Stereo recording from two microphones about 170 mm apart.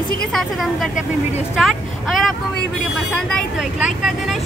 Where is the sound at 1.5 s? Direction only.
Centre (ahead or behind).